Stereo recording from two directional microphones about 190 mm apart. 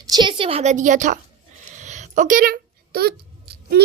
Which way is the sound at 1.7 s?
40° right (ahead or behind).